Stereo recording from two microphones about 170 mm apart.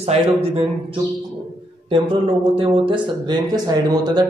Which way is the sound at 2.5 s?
30° right (ahead or behind).